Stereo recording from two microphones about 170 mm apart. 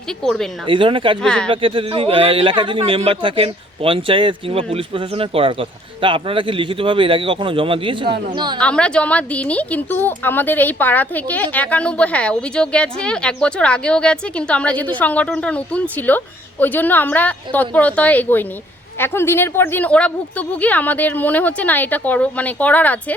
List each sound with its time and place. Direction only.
0.2 s speech: 5° left (ahead or behind)
0.7 s speech: 30° right (ahead or behind)
1.2 s speech: 5° left (ahead or behind)
1.5 s speech: 30° right (ahead or behind)
8.5 s speech: 5° left (ahead or behind)